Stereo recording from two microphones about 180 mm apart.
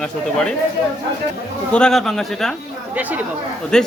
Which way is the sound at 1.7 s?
5° left (ahead or behind).